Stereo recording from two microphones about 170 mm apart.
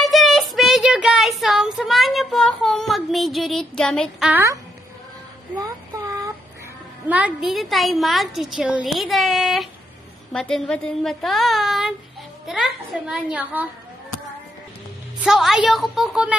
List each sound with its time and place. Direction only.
0.0 s child singing: centre (ahead or behind)
4.3 s a woman's voice: 15° right (ahead or behind)
5.6 s child singing: 20° right (ahead or behind)
7.1 s a woman's voice: 10° right (ahead or behind)
15.1 s a woman's voice: centre (ahead or behind)